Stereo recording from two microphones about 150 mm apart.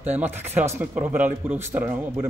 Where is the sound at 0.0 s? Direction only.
15° right (ahead or behind).